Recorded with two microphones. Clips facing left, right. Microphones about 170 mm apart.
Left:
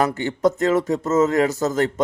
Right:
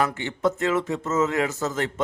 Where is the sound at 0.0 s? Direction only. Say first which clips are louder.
Left 4 dB; 40° left (ahead or behind).